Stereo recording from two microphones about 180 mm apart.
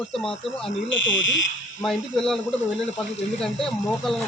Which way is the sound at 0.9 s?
90° left.